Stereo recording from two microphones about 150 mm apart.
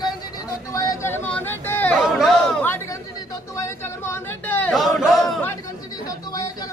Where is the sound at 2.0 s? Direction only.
Centre (ahead or behind).